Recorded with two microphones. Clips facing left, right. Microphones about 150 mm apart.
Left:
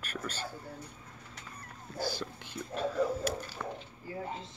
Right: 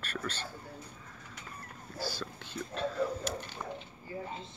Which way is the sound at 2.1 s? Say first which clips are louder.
Even; 15° left (ahead or behind).